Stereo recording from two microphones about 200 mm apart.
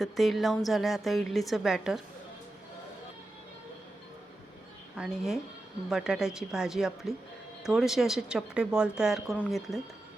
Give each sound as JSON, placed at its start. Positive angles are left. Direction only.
{"t": 0.0, "sound": "a woman's voice", "side_deg": 0}
{"t": 4.9, "sound": "a woman's voice", "side_deg": 0}